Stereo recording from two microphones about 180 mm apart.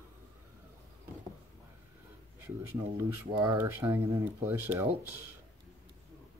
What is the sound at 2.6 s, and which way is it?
Speech, 15° right (ahead or behind).